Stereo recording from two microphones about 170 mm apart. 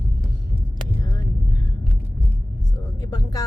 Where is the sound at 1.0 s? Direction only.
20° left (ahead or behind).